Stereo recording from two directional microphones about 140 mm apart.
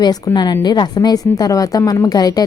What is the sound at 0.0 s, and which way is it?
A woman's voice, 30° left (ahead or behind).